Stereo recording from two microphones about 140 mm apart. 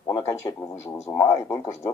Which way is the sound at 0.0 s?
20° left (ahead or behind).